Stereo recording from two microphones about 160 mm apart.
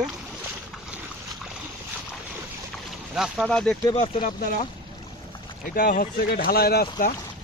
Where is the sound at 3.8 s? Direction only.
30° left (ahead or behind).